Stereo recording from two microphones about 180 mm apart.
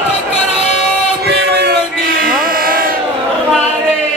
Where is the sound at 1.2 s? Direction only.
65° right (ahead or behind).